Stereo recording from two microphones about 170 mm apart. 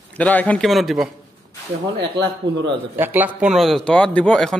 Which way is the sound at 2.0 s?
90° right.